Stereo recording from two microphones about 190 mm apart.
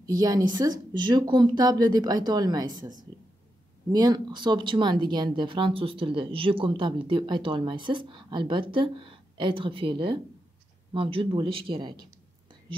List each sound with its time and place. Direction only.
0.2 s a woman's voice: 20° right (ahead or behind)